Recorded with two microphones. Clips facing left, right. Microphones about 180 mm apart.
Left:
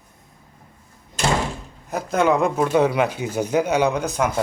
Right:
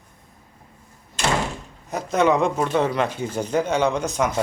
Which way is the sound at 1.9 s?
Centre (ahead or behind).